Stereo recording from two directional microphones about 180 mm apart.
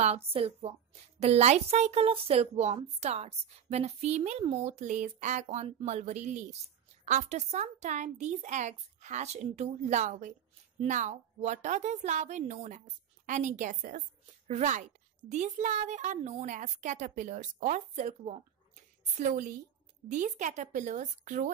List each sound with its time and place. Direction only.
0.0 s a woman's voice: 35° right (ahead or behind)